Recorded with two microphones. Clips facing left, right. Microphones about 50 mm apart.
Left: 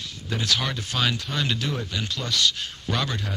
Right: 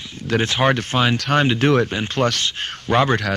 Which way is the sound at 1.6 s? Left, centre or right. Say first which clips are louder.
Right 12 dB; right.